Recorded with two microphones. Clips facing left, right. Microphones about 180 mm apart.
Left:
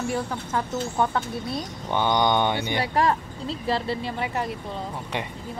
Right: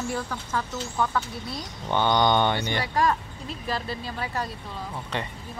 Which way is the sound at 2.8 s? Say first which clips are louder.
Left 3 dB; 25° left (ahead or behind).